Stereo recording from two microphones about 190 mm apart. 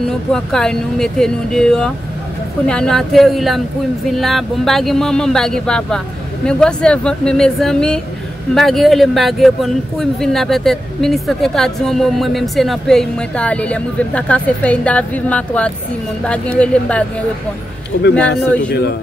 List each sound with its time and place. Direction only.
0.3 s a man's voice: 5° left (ahead or behind)
17.9 s speech: 60° left (ahead or behind)